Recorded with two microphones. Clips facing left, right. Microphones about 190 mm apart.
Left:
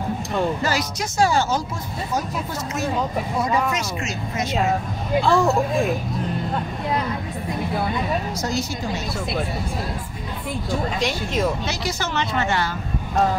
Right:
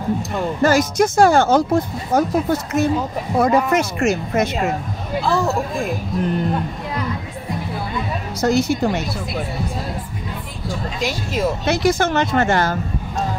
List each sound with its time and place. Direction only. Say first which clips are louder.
0.6 s speech: right 9 dB; 50° right (ahead or behind)
3.3 s speech: right 8 dB; 55° right (ahead or behind)
5.2 s speech: left 1 dB; centre (ahead or behind)
8.4 s speech: right 9 dB; 60° right (ahead or behind)
11.0 s speech: even; 5° right (ahead or behind)
11.6 s speech: right 9 dB; 55° right (ahead or behind)